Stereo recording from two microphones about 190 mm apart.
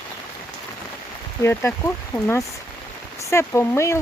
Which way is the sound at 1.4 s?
15° left (ahead or behind).